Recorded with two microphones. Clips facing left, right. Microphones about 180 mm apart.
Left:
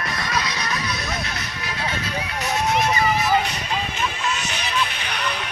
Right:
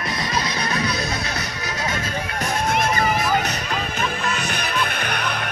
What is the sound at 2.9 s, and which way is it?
Music, 50° right (ahead or behind).